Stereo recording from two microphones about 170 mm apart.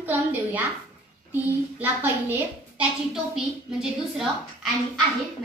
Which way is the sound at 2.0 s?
15° right (ahead or behind).